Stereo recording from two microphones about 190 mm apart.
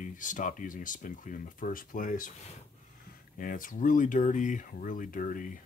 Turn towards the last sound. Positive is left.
turn(degrees=45)  # may be behind; listen again after turning